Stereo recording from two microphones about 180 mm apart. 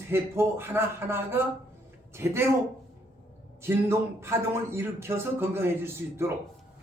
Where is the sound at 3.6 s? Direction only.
15° right (ahead or behind).